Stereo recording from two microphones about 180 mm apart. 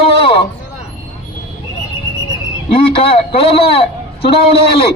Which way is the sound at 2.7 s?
30° left (ahead or behind).